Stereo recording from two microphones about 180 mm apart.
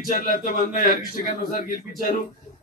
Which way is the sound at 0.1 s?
50° left (ahead or behind).